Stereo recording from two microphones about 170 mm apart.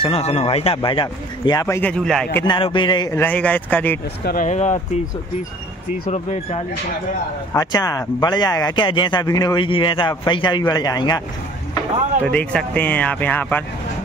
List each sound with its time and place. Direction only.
0.0 s a man's voice: 35° left (ahead or behind)
1.8 s speech: 5° left (ahead or behind)
2.4 s a man's voice: 30° left (ahead or behind); by 4.0 s 10° left (ahead or behind)
4.2 s speech: 65° left (ahead or behind)
4.5 s speech: 45° left (ahead or behind)
7.5 s speech: 20° left (ahead or behind)
12.3 s a man's voice: 10° left (ahead or behind)